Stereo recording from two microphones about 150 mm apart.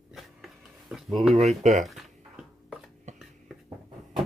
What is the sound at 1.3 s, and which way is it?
Speech, 50° right (ahead or behind).